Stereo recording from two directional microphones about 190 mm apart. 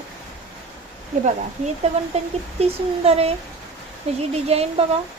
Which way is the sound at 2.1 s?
35° right (ahead or behind).